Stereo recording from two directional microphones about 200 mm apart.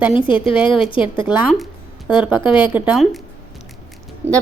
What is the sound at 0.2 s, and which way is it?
A woman's voice, 25° left (ahead or behind).